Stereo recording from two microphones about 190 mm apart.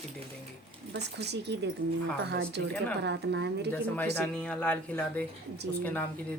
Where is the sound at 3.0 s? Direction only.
65° right (ahead or behind).